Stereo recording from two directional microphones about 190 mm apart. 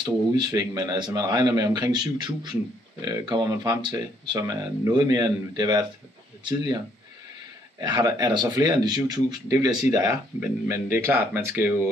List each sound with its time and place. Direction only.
0.0 s speech: 20° right (ahead or behind)
7.8 s speech: 20° right (ahead or behind)